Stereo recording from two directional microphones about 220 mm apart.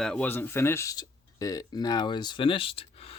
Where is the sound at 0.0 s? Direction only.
5° left (ahead or behind).